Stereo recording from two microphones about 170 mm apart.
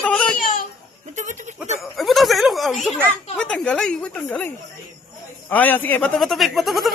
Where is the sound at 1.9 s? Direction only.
Centre (ahead or behind).